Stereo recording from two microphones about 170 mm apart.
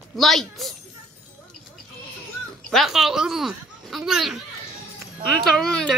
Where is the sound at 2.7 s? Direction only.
Centre (ahead or behind).